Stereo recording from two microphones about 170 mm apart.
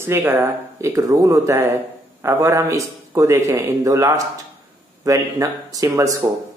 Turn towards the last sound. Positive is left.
turn(degrees=-20)  # may be behind; listen again after turning